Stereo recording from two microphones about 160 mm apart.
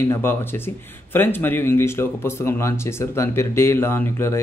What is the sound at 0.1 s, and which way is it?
Speech, 15° left (ahead or behind).